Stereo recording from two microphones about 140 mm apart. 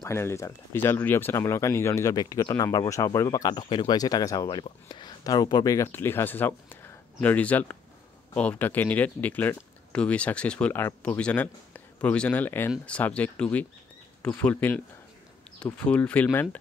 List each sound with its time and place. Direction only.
0.0 s speech: 20° left (ahead or behind)